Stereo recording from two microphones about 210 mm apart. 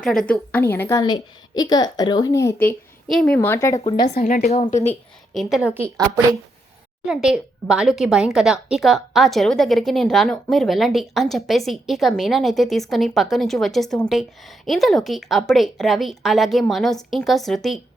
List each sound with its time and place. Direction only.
0.3 s a woman's voice: 10° left (ahead or behind)
4.1 s a woman's voice: 40° left (ahead or behind)
5.3 s a woman's voice: centre (ahead or behind)
7.0 s a woman's voice: 5° right (ahead or behind)